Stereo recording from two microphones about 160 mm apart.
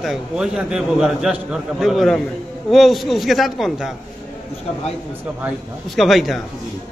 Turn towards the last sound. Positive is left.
turn(degrees=0)  # may be behind; listen again after turning